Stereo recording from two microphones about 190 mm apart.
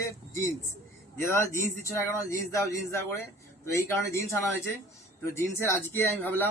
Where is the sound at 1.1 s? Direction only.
15° left (ahead or behind).